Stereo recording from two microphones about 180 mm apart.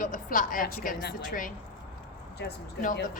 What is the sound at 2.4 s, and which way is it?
Speech, 70° left (ahead or behind).